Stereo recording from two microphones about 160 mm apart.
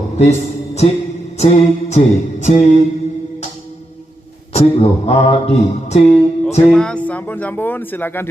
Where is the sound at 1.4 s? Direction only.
45° left (ahead or behind).